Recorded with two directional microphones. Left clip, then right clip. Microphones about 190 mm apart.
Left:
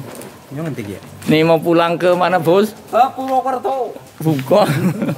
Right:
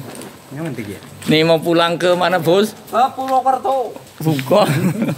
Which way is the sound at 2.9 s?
20° left (ahead or behind).